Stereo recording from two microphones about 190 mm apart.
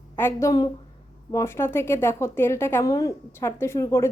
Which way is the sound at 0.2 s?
15° left (ahead or behind).